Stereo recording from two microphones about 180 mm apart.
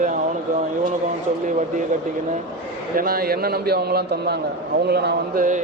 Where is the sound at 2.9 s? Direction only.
55° right (ahead or behind).